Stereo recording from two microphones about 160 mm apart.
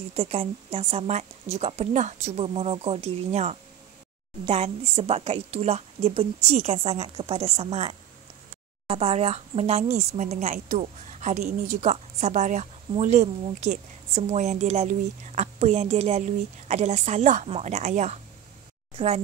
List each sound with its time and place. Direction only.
0.1 s a woman's voice: 40° right (ahead or behind)